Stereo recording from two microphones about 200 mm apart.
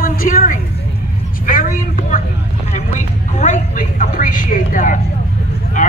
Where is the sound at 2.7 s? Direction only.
35° left (ahead or behind).